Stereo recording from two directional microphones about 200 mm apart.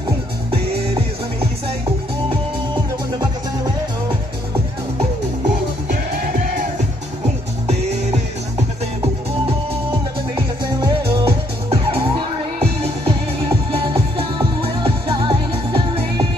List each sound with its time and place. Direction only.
10.3 s music: 20° right (ahead or behind)